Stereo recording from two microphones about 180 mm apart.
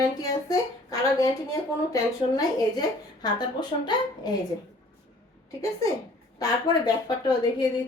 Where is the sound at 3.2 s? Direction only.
25° left (ahead or behind).